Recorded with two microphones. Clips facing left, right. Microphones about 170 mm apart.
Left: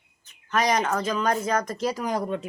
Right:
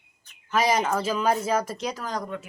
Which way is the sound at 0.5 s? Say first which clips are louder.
Even; 5° right (ahead or behind).